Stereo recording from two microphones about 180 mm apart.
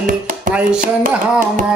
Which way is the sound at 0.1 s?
45° right (ahead or behind).